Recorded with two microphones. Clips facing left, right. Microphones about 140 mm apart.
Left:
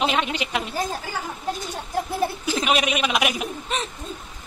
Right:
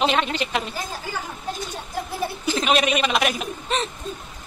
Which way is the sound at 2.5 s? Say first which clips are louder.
Right 4 dB; 10° left (ahead or behind).